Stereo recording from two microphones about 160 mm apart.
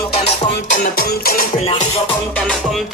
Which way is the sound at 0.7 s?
65° left (ahead or behind).